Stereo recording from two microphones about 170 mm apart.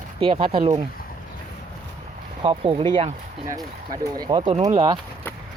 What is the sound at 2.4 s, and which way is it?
Speech, 30° right (ahead or behind).